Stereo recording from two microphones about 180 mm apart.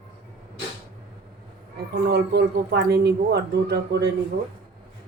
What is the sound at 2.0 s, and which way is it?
A woman's voice, 65° right (ahead or behind).